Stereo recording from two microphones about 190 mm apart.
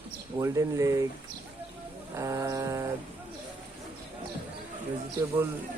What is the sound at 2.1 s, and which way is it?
Speech, 15° right (ahead or behind).